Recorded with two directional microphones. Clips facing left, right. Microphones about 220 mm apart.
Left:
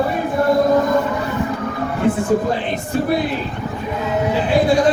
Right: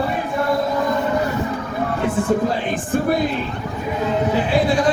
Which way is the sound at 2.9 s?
50° right (ahead or behind).